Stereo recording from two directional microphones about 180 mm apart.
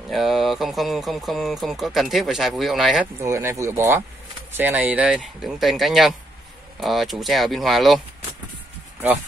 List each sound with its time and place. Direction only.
0.1 s speech: centre (ahead or behind)
3.2 s speech: 15° right (ahead or behind)